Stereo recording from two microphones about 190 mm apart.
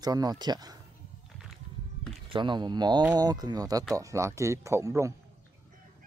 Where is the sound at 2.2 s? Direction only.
25° right (ahead or behind).